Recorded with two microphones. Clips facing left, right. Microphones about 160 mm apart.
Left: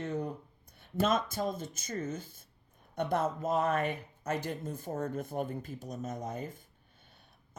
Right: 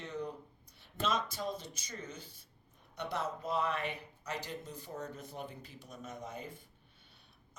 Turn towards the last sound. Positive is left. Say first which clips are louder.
# left 6 dB
turn(degrees=45)  # may be behind; listen again after turning